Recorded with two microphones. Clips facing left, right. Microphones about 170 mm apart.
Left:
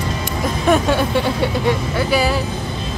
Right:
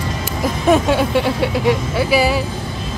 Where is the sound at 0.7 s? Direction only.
Centre (ahead or behind).